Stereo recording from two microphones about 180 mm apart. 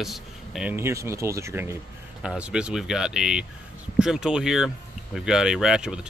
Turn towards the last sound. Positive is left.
turn(degrees=-5)  # may be behind; listen again after turning